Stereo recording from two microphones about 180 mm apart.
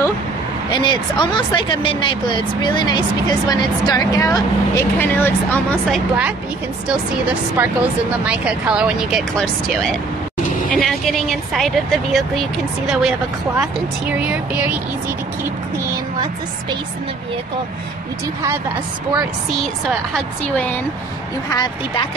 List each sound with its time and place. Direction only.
0.7 s a woman's voice: 25° left (ahead or behind)
5.9 s speech: 5° right (ahead or behind)
7.5 s speech: 5° right (ahead or behind)
14.2 s speech: 10° right (ahead or behind)
19.1 s speech: centre (ahead or behind)